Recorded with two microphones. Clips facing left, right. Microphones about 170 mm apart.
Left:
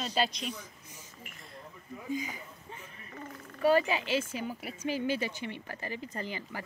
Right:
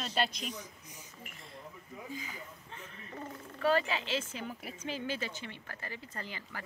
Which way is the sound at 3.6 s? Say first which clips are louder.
Left 4 dB; 15° left (ahead or behind).